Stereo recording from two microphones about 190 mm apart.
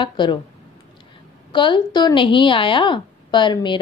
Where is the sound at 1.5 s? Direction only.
25° left (ahead or behind).